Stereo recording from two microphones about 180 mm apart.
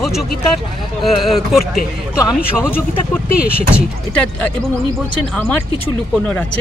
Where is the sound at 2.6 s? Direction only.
10° left (ahead or behind).